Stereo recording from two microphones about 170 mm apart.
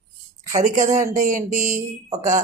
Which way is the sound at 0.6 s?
45° right (ahead or behind).